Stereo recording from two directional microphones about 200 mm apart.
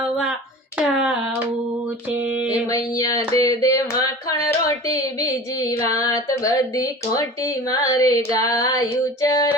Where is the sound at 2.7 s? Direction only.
15° left (ahead or behind).